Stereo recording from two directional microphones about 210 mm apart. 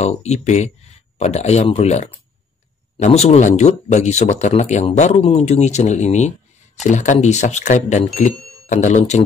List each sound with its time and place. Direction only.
0.0 s speech: 30° left (ahead or behind)